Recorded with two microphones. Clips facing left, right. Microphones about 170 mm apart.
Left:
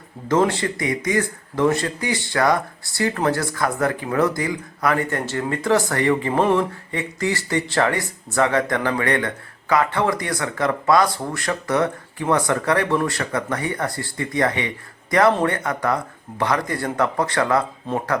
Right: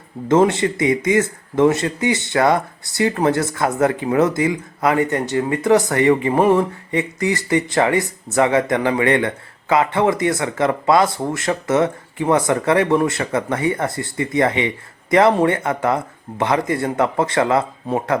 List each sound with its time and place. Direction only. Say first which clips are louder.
0.3 s speech: right 4 dB; 20° right (ahead or behind)